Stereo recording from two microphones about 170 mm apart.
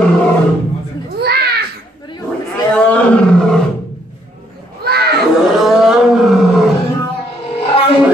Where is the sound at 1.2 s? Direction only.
70° right (ahead or behind).